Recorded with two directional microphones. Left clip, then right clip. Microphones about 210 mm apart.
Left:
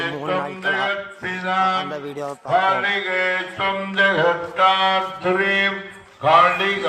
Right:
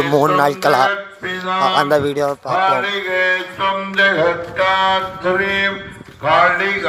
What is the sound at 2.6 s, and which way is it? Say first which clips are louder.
Music: right 3 dB; centre (ahead or behind).